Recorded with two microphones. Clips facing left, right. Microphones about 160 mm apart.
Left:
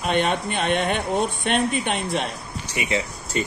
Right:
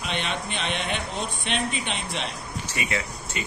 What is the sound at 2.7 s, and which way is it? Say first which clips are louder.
Speech: left 5 dB; 20° left (ahead or behind).